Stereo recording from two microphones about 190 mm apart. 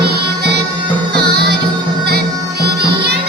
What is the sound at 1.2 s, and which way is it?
Music, 55° right (ahead or behind).